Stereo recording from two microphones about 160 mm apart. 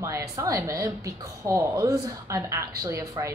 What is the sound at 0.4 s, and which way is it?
A woman's voice, 20° right (ahead or behind).